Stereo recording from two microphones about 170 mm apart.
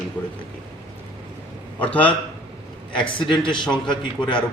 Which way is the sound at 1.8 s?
10° left (ahead or behind).